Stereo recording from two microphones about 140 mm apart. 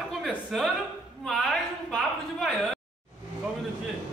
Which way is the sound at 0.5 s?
Centre (ahead or behind).